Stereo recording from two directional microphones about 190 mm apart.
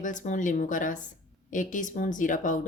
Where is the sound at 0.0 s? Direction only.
40° left (ahead or behind).